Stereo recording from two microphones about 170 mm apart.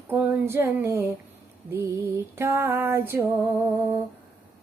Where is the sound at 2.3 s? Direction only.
15° right (ahead or behind).